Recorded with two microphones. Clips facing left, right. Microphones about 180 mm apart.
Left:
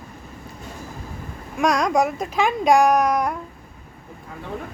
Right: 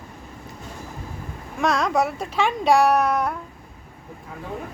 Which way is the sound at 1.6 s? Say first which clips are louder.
Left 2 dB; 15° left (ahead or behind).